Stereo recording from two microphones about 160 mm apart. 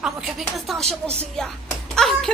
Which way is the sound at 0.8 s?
40° right (ahead or behind).